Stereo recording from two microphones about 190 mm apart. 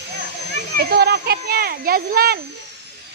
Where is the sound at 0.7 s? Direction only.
55° right (ahead or behind).